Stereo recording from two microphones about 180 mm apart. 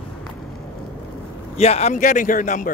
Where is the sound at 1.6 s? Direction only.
35° left (ahead or behind).